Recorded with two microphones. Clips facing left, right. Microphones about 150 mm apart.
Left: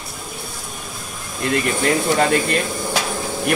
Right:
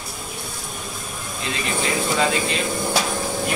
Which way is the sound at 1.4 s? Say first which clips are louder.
Left 7 dB; 55° left (ahead or behind).